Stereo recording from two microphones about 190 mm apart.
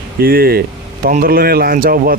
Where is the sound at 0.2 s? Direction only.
50° right (ahead or behind).